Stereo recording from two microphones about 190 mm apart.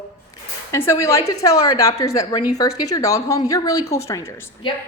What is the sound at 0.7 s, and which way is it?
A woman's voice, 15° left (ahead or behind).